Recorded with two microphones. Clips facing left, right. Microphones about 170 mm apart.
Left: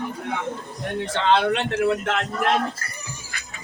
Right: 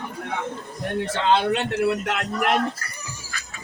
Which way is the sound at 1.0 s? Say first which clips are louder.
Left 1 dB; centre (ahead or behind).